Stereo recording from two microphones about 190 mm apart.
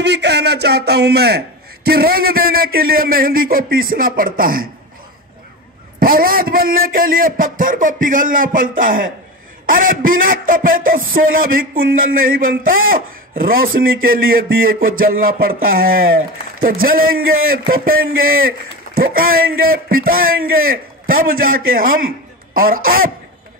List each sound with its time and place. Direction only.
0.0 s a man's voice: 65° right (ahead or behind)
5.9 s a man's voice: 50° right (ahead or behind)
18.9 s a sound: 40° left (ahead or behind)
19.9 s a man's voice: 50° right (ahead or behind)